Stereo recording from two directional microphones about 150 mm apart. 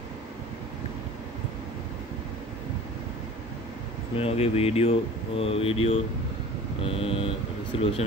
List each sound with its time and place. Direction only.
4.2 s speech: 40° left (ahead or behind)